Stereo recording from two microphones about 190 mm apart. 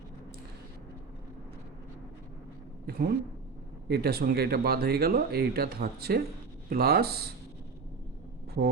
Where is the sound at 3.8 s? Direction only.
55° right (ahead or behind).